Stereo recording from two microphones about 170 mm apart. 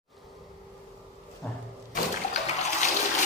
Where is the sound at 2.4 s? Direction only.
40° left (ahead or behind).